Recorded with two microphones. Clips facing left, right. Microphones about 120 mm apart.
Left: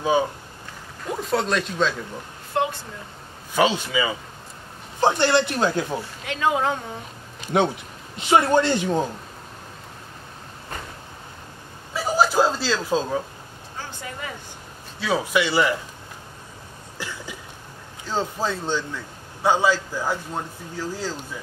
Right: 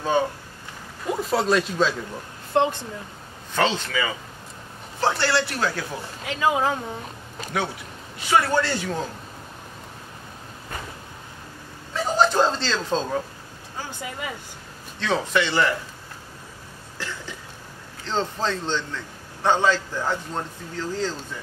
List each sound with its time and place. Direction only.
1.0 s speech: 5° right (ahead or behind)
3.5 s a man's voice: 10° left (ahead or behind)
6.2 s speech: 5° right (ahead or behind)
7.5 s speech: 25° left (ahead or behind)
11.9 s chuckle: 5° left (ahead or behind)
15.0 s a man's voice: 10° left (ahead or behind)
17.0 s a sound: 15° left (ahead or behind)
18.0 s a man's voice: 10° left (ahead or behind)